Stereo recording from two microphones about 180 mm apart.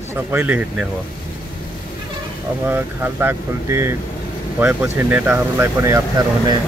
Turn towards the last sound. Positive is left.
turn(degrees=-20)  # may be behind; listen again after turning